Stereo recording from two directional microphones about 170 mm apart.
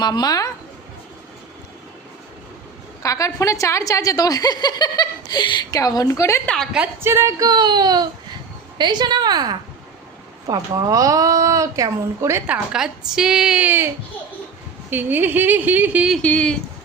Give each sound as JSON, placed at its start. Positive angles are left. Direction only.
{"t": 0.0, "sound": "a woman's voice", "side_deg": 25}
{"t": 3.0, "sound": "a woman's voice", "side_deg": 20}
{"t": 6.5, "sound": "a woman's voice", "side_deg": 0}
{"t": 6.8, "sound": "speech", "side_deg": -15}
{"t": 12.5, "sound": "a woman's voice", "side_deg": -5}